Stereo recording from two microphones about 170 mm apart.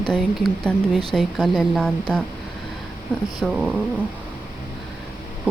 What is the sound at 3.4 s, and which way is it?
Speech, centre (ahead or behind).